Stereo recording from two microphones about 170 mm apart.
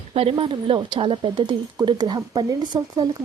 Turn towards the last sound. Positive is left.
turn(degrees=-25)  # may be behind; listen again after turning